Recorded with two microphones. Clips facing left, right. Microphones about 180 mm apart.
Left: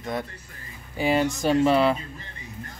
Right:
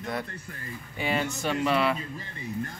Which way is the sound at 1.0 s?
35° left (ahead or behind).